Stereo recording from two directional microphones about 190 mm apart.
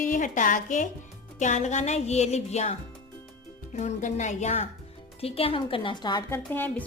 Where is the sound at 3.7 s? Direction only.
40° left (ahead or behind); by 6.4 s 20° left (ahead or behind).